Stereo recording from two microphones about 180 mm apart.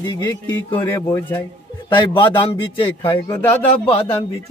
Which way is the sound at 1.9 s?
25° left (ahead or behind).